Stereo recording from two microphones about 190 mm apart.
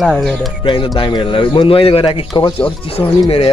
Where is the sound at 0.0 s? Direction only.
Centre (ahead or behind).